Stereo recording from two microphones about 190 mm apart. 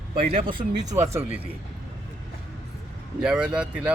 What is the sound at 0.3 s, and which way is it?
Speech, 25° right (ahead or behind).